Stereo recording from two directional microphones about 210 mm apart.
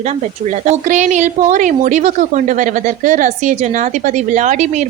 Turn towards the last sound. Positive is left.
turn(degrees=-35)  # may be behind; listen again after turning